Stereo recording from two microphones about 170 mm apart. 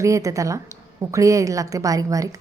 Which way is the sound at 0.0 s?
20° right (ahead or behind).